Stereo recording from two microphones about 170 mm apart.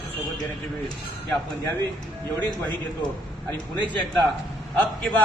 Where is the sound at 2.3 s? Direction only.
10° left (ahead or behind).